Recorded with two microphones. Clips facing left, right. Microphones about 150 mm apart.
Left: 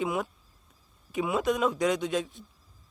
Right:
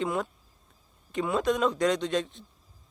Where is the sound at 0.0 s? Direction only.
5° left (ahead or behind).